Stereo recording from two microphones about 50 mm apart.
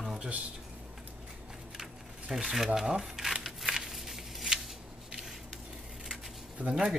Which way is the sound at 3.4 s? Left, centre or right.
Centre.